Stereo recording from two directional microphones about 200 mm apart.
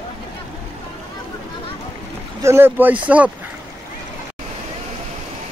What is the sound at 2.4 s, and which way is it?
Speech, 10° right (ahead or behind).